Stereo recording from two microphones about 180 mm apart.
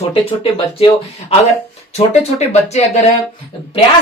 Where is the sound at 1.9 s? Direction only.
35° left (ahead or behind).